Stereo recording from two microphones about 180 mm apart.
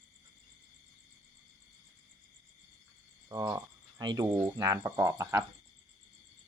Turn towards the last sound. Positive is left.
turn(degrees=-15)  # may be behind; listen again after turning